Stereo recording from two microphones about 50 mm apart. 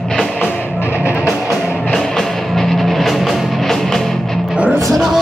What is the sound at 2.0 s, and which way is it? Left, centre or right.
Music, centre.